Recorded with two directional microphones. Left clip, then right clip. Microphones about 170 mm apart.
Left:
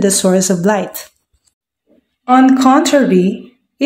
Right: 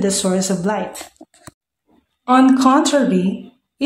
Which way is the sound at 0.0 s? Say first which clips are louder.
Left 6 dB; 20° left (ahead or behind).